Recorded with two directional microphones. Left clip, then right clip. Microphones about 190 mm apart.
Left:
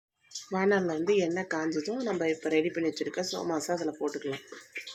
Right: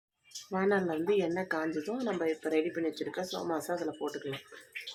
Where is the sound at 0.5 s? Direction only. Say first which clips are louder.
Left 3 dB; 10° left (ahead or behind).